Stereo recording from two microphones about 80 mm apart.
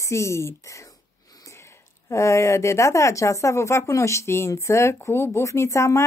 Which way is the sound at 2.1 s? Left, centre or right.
Left.